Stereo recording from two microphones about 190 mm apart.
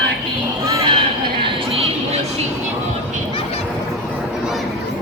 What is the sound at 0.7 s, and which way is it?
Crowd, 25° right (ahead or behind).